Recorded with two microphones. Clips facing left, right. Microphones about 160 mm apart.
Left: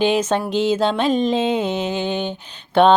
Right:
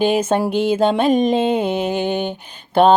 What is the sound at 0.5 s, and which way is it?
Music, 55° right (ahead or behind).